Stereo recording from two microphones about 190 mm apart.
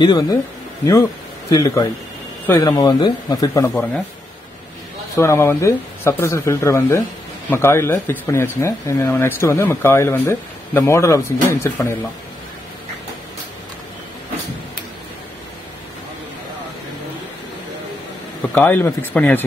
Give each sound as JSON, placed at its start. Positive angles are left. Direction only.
{"t": 0.0, "sound": "speech", "side_deg": 20}
{"t": 1.5, "sound": "speech", "side_deg": 15}
{"t": 5.1, "sound": "speech", "side_deg": 15}
{"t": 18.5, "sound": "speech", "side_deg": 10}